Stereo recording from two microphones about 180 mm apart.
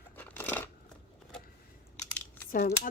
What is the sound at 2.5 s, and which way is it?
Speech, 50° left (ahead or behind).